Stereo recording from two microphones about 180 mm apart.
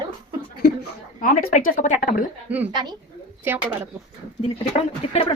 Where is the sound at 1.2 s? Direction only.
50° left (ahead or behind).